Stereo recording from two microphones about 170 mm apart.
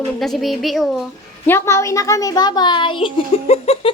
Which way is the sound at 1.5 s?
15° left (ahead or behind).